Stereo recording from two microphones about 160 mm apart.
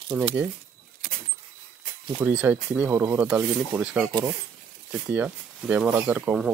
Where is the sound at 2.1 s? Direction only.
10° right (ahead or behind).